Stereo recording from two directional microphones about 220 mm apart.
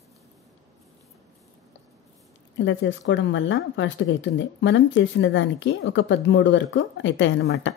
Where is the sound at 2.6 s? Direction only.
55° left (ahead or behind).